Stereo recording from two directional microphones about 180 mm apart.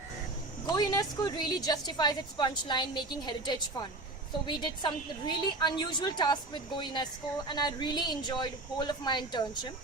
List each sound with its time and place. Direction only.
0.7 s a woman's voice: 25° left (ahead or behind)